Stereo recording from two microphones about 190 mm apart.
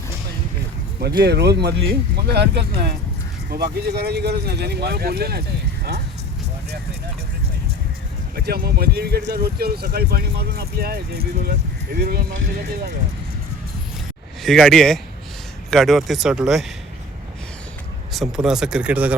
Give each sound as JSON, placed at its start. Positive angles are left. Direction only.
{"t": 1.0, "sound": "speech", "side_deg": -60}
{"t": 8.4, "sound": "speech", "side_deg": -55}
{"t": 14.4, "sound": "speech", "side_deg": 0}
{"t": 18.4, "sound": "speech", "side_deg": -5}